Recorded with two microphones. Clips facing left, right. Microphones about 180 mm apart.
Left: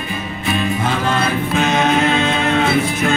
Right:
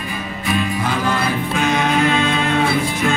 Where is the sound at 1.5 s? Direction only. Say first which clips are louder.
Left 2 dB; 20° left (ahead or behind).